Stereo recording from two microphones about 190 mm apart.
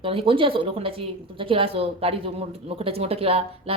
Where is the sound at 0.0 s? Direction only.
30° right (ahead or behind).